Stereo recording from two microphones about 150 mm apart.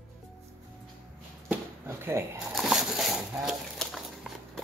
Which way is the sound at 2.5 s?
Centre (ahead or behind).